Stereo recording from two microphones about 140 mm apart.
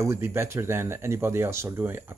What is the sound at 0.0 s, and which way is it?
Speech, 20° right (ahead or behind).